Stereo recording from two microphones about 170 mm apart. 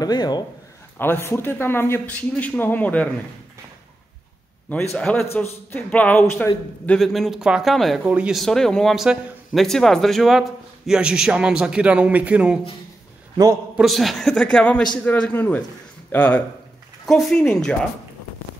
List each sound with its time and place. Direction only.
0.0 s speech: 25° left (ahead or behind)
0.9 s a man's voice: 10° left (ahead or behind)
4.9 s a man's voice: 5° left (ahead or behind)
6.9 s speech: centre (ahead or behind)
13.7 s a man's voice: centre (ahead or behind)